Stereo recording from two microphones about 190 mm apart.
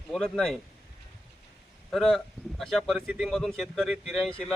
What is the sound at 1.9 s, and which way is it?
A man's voice, centre (ahead or behind).